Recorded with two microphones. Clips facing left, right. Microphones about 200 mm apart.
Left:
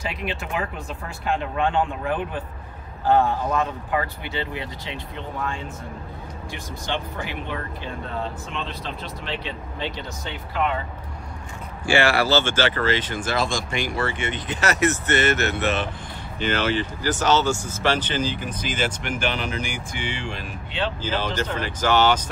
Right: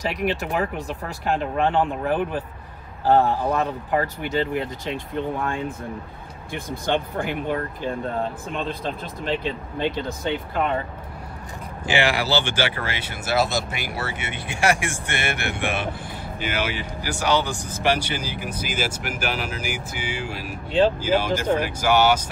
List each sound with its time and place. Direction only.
0.1 s speech: 40° right (ahead or behind)
1.7 s speech: 40° right (ahead or behind)
3.9 s speech: 45° right (ahead or behind)
11.8 s speech: 15° right (ahead or behind)